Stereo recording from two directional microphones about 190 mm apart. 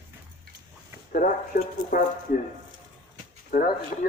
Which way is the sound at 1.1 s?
45° left (ahead or behind).